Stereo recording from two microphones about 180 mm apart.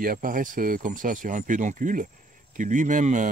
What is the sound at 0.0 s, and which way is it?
Speech, 50° right (ahead or behind).